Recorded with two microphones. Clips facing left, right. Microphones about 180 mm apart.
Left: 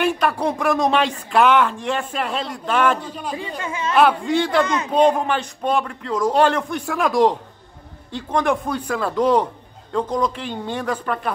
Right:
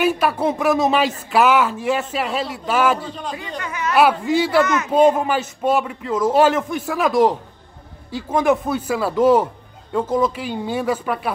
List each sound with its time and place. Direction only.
0.0 s speech: 5° right (ahead or behind)
3.3 s speech: 25° left (ahead or behind)
3.9 s speech: 5° right (ahead or behind)